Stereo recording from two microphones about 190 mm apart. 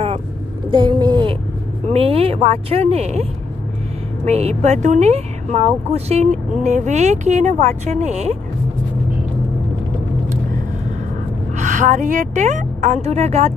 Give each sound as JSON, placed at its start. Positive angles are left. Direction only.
{"t": 0.7, "sound": "a sound", "side_deg": -25}
{"t": 1.9, "sound": "speech", "side_deg": -30}
{"t": 11.5, "sound": "speech", "side_deg": -40}